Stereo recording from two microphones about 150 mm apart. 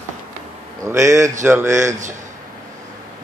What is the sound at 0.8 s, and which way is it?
Speech, 20° right (ahead or behind).